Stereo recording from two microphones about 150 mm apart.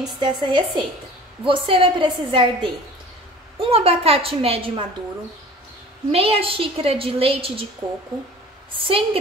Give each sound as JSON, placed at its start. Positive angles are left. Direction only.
{"t": 0.2, "sound": "a woman's voice", "side_deg": -30}
{"t": 6.1, "sound": "a woman's voice", "side_deg": -40}
{"t": 8.7, "sound": "a woman's voice", "side_deg": -35}